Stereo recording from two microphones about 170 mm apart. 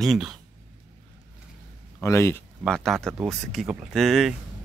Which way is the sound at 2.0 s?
15° left (ahead or behind).